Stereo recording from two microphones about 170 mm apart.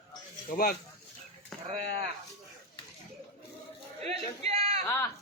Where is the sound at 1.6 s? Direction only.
40° right (ahead or behind).